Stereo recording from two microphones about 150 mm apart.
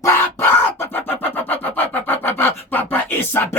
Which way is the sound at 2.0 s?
15° left (ahead or behind).